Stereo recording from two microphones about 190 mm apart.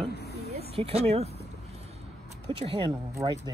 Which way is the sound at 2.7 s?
25° right (ahead or behind).